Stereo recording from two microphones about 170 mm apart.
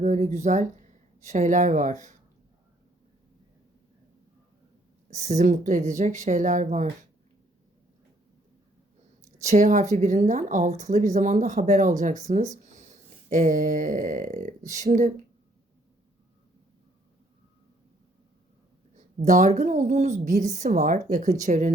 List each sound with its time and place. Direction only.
0.0 s speech: 45° right (ahead or behind)
5.1 s speech: 45° right (ahead or behind)
9.4 s speech: 45° right (ahead or behind)
12.5 s a sound: 45° right (ahead or behind)
18.9 s speech: 50° right (ahead or behind)